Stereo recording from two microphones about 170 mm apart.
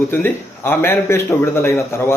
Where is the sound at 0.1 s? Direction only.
10° left (ahead or behind).